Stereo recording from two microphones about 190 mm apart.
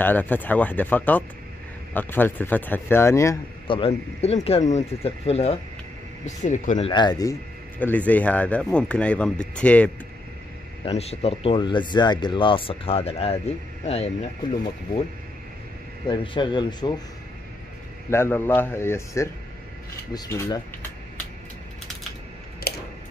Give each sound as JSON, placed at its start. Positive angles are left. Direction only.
{"t": 0.0, "sound": "speech", "side_deg": 10}
{"t": 3.6, "sound": "speech", "side_deg": 30}
{"t": 6.9, "sound": "speech", "side_deg": 20}
{"t": 7.8, "sound": "speech", "side_deg": 10}
{"t": 10.9, "sound": "speech", "side_deg": 35}
{"t": 16.1, "sound": "speech", "side_deg": 25}
{"t": 18.1, "sound": "speech", "side_deg": 10}